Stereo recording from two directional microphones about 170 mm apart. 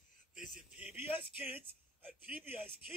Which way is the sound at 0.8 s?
10° right (ahead or behind).